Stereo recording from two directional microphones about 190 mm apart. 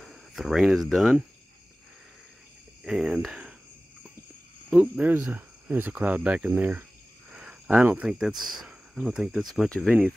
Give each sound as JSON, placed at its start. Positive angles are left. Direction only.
{"t": 0.0, "sound": "speech", "side_deg": 0}
{"t": 2.8, "sound": "speech", "side_deg": -5}
{"t": 4.6, "sound": "speech", "side_deg": -5}